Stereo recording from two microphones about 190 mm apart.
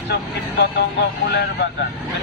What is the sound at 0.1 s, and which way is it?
Speech, 60° left (ahead or behind).